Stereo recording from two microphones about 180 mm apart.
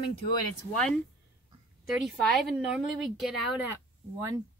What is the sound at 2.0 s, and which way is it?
Speech, centre (ahead or behind).